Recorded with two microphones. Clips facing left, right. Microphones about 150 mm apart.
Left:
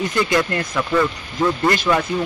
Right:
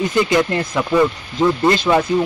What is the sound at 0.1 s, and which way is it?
Speech, 20° right (ahead or behind).